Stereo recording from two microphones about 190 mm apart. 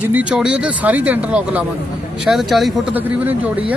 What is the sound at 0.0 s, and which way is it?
Speech, 10° right (ahead or behind).